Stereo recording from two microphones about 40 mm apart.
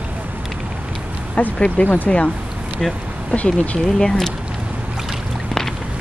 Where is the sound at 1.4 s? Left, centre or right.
Left.